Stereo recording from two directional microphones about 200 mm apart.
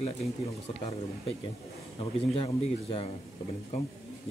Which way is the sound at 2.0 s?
25° left (ahead or behind).